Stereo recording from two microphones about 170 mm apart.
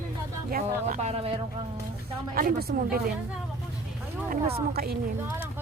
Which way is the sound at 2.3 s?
60° right (ahead or behind).